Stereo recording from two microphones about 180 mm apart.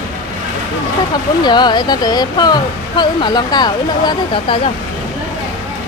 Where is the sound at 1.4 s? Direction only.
25° left (ahead or behind).